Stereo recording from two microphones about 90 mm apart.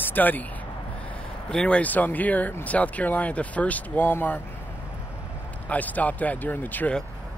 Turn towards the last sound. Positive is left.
turn(degrees=20)  # may be behind; listen again after turning